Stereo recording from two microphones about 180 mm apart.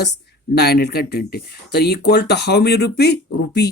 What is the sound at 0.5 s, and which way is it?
Speech, 65° left (ahead or behind).